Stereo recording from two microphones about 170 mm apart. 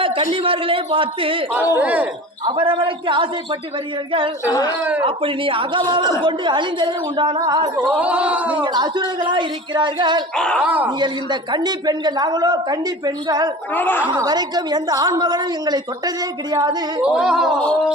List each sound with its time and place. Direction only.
0.4 s speech: 30° right (ahead or behind)
1.7 s speech: 10° right (ahead or behind)
2.4 s a man's voice: 30° right (ahead or behind)
4.4 s speech: 20° left (ahead or behind)
5.0 s a man's voice: 30° right (ahead or behind)
7.9 s speech: 5° right (ahead or behind)
8.6 s a man's voice: 25° right (ahead or behind)
10.3 s speech: 5° left (ahead or behind)
10.8 s a man's voice: 25° right (ahead or behind)
13.7 s a woman's voice: 10° left (ahead or behind)
14.1 s a man's voice: 25° right (ahead or behind)
17.0 s speech: 5° right (ahead or behind)